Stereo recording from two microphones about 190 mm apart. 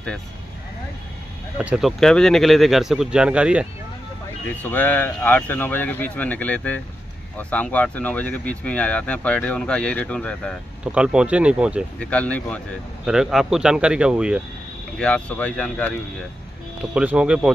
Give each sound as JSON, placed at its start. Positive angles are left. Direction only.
{"t": 1.6, "sound": "speech", "side_deg": -5}
{"t": 4.6, "sound": "speech", "side_deg": 10}
{"t": 10.8, "sound": "speech", "side_deg": -5}
{"t": 12.0, "sound": "speech", "side_deg": 5}
{"t": 15.0, "sound": "speech", "side_deg": 5}
{"t": 16.9, "sound": "speech", "side_deg": -5}